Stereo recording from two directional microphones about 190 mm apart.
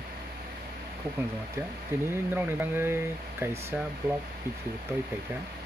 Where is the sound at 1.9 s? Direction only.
10° right (ahead or behind).